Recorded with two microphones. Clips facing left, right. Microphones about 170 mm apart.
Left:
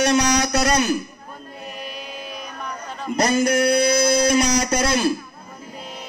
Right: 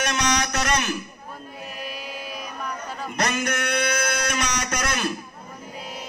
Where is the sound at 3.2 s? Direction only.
35° left (ahead or behind).